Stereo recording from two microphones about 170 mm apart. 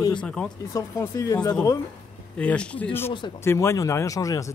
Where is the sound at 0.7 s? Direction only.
20° left (ahead or behind).